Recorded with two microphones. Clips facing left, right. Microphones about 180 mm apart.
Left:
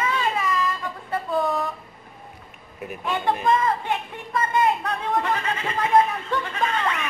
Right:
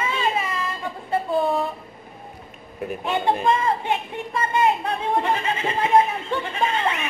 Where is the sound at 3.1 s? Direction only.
25° right (ahead or behind).